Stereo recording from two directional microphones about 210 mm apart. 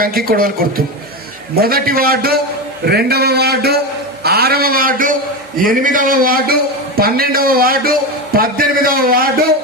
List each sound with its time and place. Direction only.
0.0 s a man's voice: 45° right (ahead or behind)
1.5 s a man's voice: 45° right (ahead or behind)